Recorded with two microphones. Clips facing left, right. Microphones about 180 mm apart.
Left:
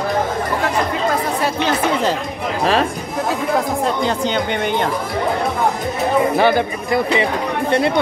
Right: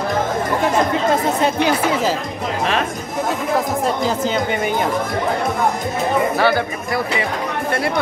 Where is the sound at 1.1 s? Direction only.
20° right (ahead or behind).